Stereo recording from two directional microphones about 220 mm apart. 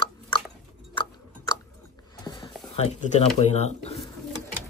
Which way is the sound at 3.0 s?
30° left (ahead or behind).